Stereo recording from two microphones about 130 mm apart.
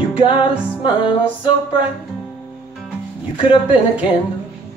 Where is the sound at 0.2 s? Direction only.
40° left (ahead or behind).